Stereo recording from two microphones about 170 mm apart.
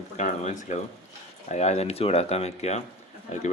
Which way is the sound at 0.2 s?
45° left (ahead or behind).